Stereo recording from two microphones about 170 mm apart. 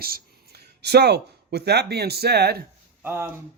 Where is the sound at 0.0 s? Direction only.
65° right (ahead or behind).